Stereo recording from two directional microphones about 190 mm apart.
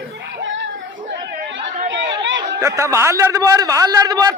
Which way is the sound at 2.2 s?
70° right (ahead or behind).